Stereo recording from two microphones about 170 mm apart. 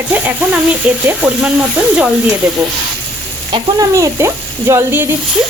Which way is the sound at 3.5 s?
20° right (ahead or behind).